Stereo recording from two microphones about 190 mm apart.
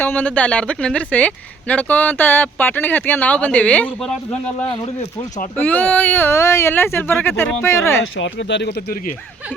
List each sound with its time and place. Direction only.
0.0 s speech: 10° left (ahead or behind)
4.6 s speech: 35° left (ahead or behind)
5.5 s speech: 10° left (ahead or behind)
8.1 s speech: 70° left (ahead or behind)